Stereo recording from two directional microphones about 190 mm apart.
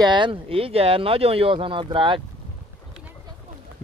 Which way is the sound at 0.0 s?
25° right (ahead or behind).